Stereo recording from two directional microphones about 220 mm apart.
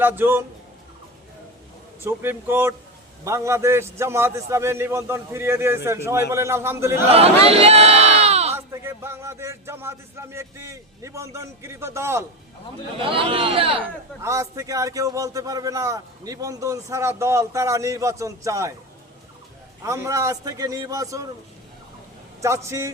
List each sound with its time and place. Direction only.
0.0 s a man's voice: 10° right (ahead or behind)
2.0 s a man's voice: 10° right (ahead or behind)
7.1 s speech: 25° right (ahead or behind)
8.5 s a man's voice: 10° right (ahead or behind)
13.0 s speech: 25° right (ahead or behind)
14.2 s a man's voice: 15° right (ahead or behind)
19.8 s a man's voice: 15° right (ahead or behind)
22.4 s a man's voice: 15° right (ahead or behind)